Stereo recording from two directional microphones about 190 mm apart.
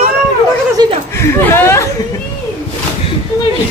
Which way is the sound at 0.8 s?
20° right (ahead or behind).